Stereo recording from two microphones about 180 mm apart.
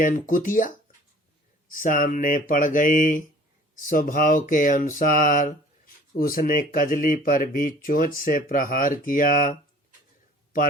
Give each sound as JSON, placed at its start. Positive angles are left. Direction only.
{"t": 0.0, "sound": "speech", "side_deg": 50}
{"t": 1.7, "sound": "speech", "side_deg": 45}